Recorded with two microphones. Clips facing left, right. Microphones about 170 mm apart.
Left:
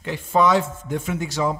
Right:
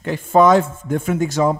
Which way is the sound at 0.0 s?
50° right (ahead or behind).